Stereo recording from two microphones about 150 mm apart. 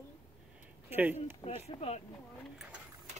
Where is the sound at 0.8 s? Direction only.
15° right (ahead or behind).